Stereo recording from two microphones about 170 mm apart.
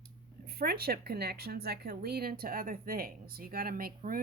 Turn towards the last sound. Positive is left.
turn(degrees=-55)  # may be behind; listen again after turning